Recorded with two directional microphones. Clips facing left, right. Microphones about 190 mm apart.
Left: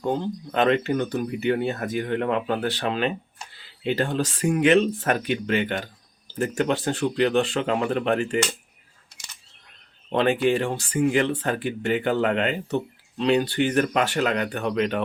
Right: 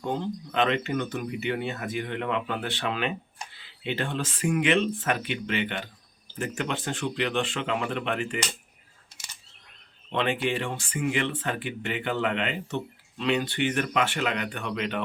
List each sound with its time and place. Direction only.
0.1 s speech: 40° left (ahead or behind)
10.1 s speech: 40° left (ahead or behind)